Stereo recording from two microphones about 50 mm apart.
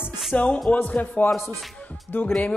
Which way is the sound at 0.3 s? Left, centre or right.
Left.